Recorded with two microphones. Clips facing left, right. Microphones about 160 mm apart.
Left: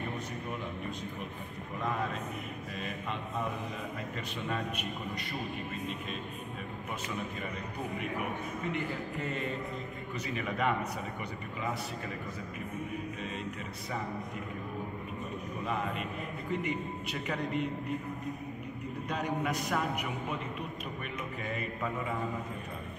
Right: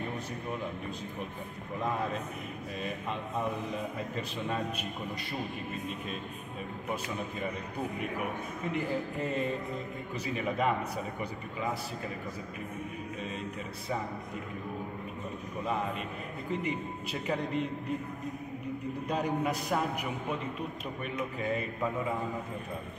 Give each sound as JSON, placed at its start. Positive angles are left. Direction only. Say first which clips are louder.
{"t": 8.7, "sound": "a man's voice", "louder": "right 3 dB", "side_deg": -35}
{"t": 16.6, "sound": "a man's voice", "louder": "even", "side_deg": -30}
{"t": 19.0, "sound": "a man's voice", "louder": "right 2 dB", "side_deg": -30}